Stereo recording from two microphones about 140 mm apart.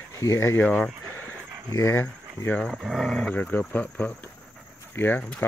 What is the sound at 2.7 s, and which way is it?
Speech, centre (ahead or behind).